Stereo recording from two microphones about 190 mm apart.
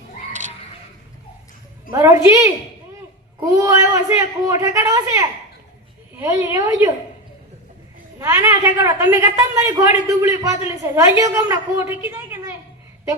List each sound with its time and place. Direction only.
1.9 s a woman's voice: 15° right (ahead or behind)
8.2 s a woman's voice: 15° right (ahead or behind)